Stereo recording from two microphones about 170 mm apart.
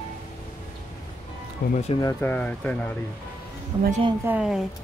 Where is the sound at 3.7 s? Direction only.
25° right (ahead or behind).